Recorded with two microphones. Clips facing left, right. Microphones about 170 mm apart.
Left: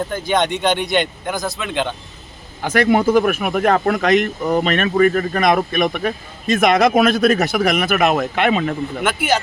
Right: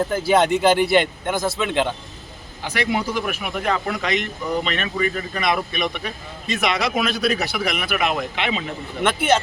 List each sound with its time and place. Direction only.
0.1 s speech: 5° right (ahead or behind)
2.6 s speech: 50° left (ahead or behind)
9.0 s speech: centre (ahead or behind)